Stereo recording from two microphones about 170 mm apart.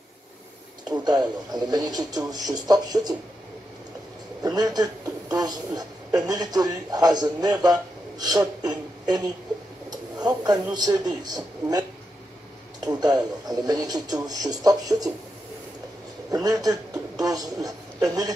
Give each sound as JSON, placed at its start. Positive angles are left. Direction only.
{"t": 0.8, "sound": "speech", "side_deg": -25}
{"t": 4.4, "sound": "a sound", "side_deg": -20}
{"t": 5.3, "sound": "speech", "side_deg": -20}
{"t": 12.8, "sound": "speech", "side_deg": -20}
{"t": 16.3, "sound": "a man's voice", "side_deg": -20}